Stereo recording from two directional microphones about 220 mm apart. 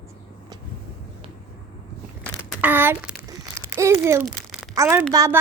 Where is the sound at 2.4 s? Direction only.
10° right (ahead or behind).